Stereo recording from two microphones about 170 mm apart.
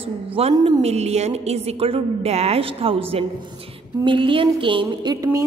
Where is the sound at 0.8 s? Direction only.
40° right (ahead or behind).